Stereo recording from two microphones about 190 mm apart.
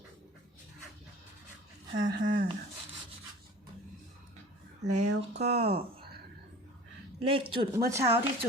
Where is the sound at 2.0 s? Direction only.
20° right (ahead or behind).